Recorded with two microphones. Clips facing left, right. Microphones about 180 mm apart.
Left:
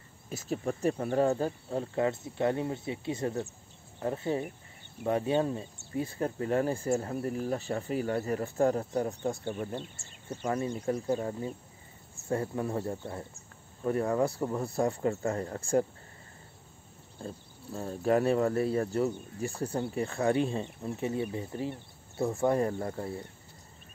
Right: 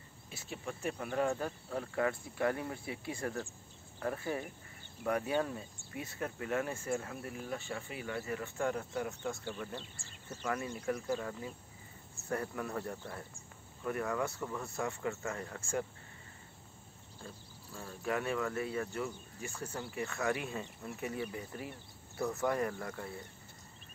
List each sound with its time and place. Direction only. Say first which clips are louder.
0.3 s speech: left 10 dB; 40° left (ahead or behind)
9.5 s speech: left 7 dB; 45° left (ahead or behind)
9.9 s speech: left 7 dB; 20° left (ahead or behind)
17.2 s speech: left 9 dB; 35° left (ahead or behind)